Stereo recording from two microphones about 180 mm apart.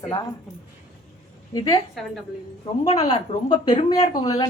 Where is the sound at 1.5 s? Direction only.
20° left (ahead or behind).